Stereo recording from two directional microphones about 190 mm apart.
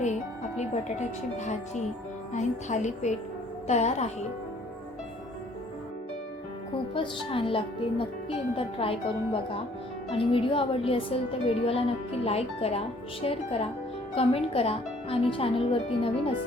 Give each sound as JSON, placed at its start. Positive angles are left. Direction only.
{"t": 0.5, "sound": "a woman's voice", "side_deg": 35}
{"t": 6.9, "sound": "a woman's voice", "side_deg": 25}